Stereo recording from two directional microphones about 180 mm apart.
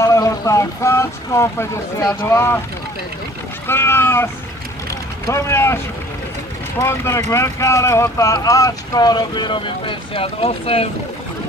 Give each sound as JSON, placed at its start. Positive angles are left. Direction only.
{"t": 0.0, "sound": "speech", "side_deg": 15}
{"t": 3.6, "sound": "speech", "side_deg": 15}
{"t": 6.8, "sound": "speech", "side_deg": 15}